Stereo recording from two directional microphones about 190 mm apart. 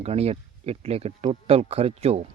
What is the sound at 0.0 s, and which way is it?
A man's voice, 30° right (ahead or behind).